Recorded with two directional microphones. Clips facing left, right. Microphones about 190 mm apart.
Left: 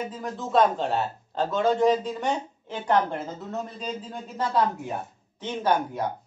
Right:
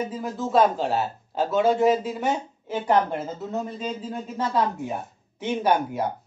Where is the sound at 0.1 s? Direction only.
5° right (ahead or behind).